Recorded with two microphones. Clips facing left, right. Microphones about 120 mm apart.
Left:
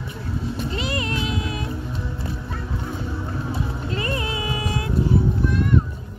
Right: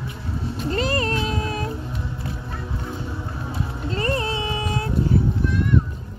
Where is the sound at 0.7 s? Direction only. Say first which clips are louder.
Right 8 dB; 40° right (ahead or behind).